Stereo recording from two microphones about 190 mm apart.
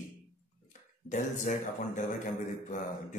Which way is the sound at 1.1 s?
40° left (ahead or behind).